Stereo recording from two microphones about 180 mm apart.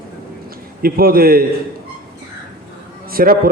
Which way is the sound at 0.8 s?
55° right (ahead or behind).